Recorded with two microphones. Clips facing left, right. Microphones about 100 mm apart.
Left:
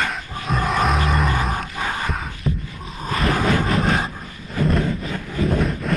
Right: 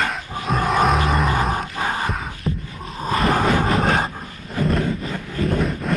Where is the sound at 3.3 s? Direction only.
35° right (ahead or behind).